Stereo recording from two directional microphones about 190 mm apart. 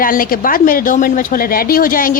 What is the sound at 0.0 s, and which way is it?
Speech, 50° left (ahead or behind).